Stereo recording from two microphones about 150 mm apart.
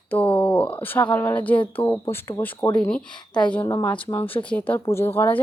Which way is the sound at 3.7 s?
20° left (ahead or behind).